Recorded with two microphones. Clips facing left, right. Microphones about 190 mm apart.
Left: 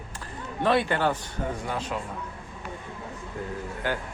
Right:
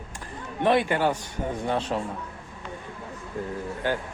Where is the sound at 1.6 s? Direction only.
30° right (ahead or behind).